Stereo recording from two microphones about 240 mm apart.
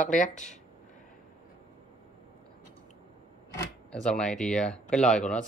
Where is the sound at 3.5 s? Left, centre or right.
Centre.